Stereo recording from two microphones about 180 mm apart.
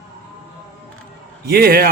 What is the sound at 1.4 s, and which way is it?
Speech, 60° right (ahead or behind).